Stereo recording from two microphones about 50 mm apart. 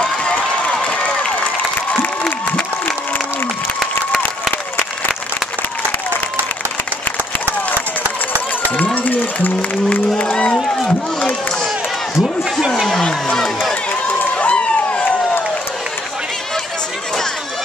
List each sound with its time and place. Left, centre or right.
0.2 s a sound: left
0.8 s crowd: left
8.7 s music: left
10.1 s speech: left
10.9 s run: left
12.2 s a sound: centre
13.0 s crowd: centre
14.0 s run: left